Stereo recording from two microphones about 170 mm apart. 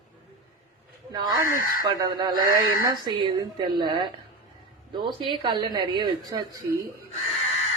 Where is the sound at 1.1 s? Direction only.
25° right (ahead or behind).